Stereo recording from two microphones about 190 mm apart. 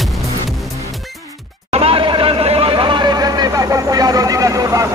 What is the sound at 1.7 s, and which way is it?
Vehicle, 30° right (ahead or behind).